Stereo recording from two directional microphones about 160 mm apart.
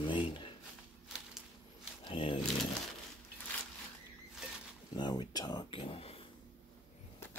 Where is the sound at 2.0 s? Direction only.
30° left (ahead or behind).